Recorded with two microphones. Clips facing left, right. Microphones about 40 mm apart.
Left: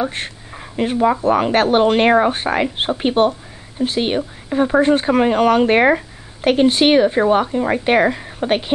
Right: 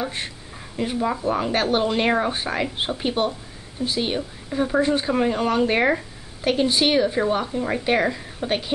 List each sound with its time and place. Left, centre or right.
0.6 s a sound: left
0.9 s speech: centre
1.2 s speech: left
5.7 s speech: left